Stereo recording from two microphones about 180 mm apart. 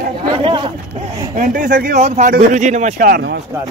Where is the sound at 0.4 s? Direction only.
25° right (ahead or behind).